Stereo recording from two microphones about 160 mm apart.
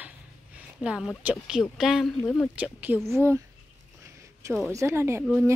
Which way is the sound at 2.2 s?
10° left (ahead or behind).